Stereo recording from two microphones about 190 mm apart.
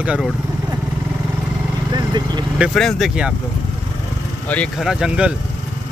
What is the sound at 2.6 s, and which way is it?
Speech, centre (ahead or behind).